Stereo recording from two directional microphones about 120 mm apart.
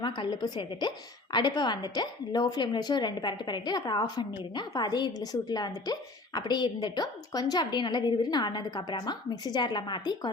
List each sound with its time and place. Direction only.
0.0 s a woman's voice: 40° left (ahead or behind)